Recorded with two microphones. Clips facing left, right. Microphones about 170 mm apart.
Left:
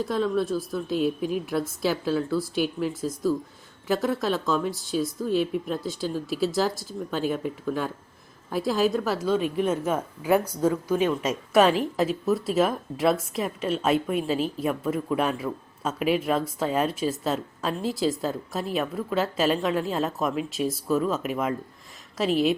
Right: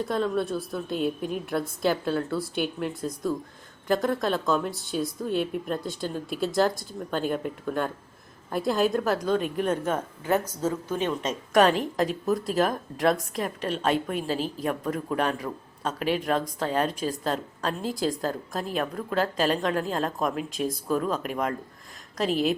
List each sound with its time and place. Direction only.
0.0 s a woman's voice: centre (ahead or behind)
14.2 s a woman's voice: 40° right (ahead or behind)
14.6 s a woman's voice: 5° left (ahead or behind)